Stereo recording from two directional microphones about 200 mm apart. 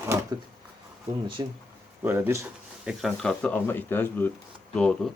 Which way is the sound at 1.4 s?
20° right (ahead or behind).